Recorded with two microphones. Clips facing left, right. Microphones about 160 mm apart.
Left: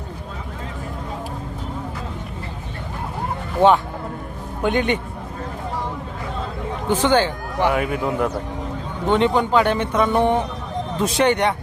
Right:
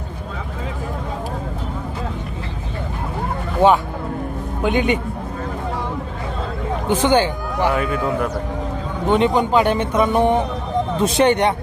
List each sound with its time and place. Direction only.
4.6 s a man's voice: 5° right (ahead or behind)
6.8 s speech: 15° right (ahead or behind)
7.7 s speech: 15° left (ahead or behind)
9.0 s a man's voice: 15° right (ahead or behind)